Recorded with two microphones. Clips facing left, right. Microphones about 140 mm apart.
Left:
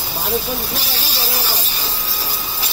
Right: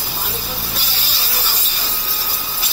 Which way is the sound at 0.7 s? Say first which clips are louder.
Left 3 dB; 35° left (ahead or behind).